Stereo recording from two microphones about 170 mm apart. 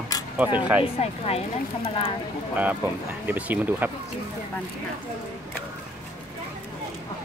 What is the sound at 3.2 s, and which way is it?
Speech, 10° right (ahead or behind).